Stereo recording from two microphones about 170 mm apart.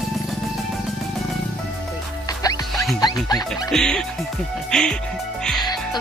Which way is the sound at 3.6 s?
5° left (ahead or behind).